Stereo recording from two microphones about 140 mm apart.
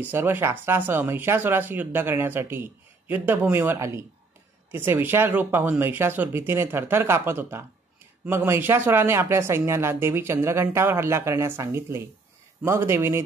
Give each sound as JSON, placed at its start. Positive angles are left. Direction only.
{"t": 0.0, "sound": "speech", "side_deg": -15}